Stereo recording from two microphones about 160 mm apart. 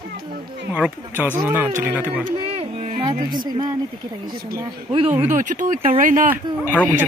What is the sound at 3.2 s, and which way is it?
Speech, 30° right (ahead or behind).